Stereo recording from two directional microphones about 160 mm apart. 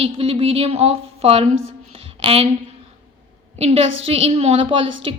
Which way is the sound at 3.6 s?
40° right (ahead or behind).